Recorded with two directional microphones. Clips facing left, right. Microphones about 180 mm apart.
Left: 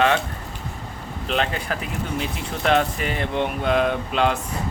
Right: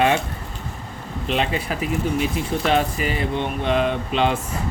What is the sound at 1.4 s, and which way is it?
Speech, 5° right (ahead or behind).